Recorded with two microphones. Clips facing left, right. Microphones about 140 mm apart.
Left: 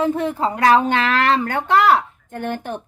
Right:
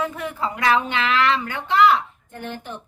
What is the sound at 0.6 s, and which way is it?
A woman's voice, 40° left (ahead or behind).